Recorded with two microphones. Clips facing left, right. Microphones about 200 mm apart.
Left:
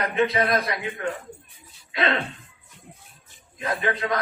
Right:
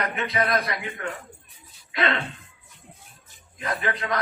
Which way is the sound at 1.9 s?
30° left (ahead or behind).